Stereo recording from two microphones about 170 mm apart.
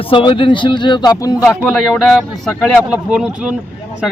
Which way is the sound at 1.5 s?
Centre (ahead or behind).